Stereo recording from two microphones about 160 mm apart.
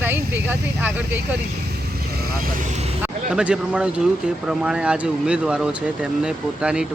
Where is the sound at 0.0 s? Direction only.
15° right (ahead or behind).